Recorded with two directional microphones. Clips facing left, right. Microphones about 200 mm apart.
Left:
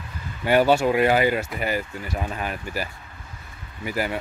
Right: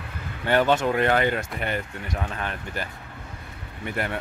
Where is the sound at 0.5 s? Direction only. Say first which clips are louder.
Left 3 dB; 10° left (ahead or behind).